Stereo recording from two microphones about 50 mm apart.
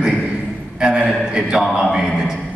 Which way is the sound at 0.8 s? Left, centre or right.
Centre.